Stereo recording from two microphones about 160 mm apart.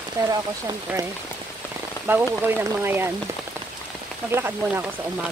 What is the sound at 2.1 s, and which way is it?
Speech, 15° right (ahead or behind).